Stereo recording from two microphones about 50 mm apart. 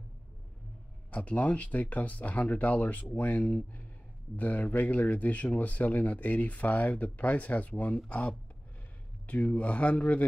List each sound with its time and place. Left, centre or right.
1.1 s speech: left